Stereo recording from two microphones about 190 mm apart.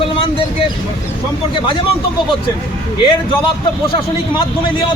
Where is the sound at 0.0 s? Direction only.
30° left (ahead or behind).